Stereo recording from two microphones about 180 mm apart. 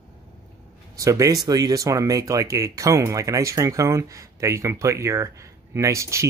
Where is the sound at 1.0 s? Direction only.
15° right (ahead or behind).